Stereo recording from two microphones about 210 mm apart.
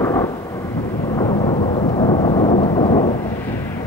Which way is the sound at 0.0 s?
15° left (ahead or behind).